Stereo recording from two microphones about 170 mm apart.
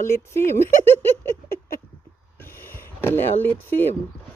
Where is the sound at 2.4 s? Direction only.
15° left (ahead or behind).